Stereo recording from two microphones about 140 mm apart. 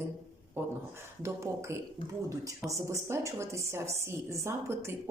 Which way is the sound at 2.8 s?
20° right (ahead or behind).